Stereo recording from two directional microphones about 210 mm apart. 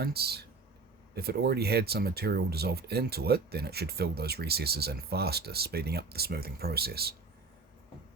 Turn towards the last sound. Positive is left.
turn(degrees=-45)  # may be behind; listen again after turning